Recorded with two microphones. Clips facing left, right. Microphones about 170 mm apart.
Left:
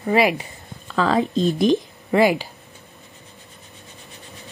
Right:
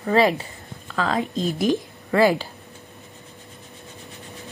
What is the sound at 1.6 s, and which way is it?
Speech, 20° left (ahead or behind).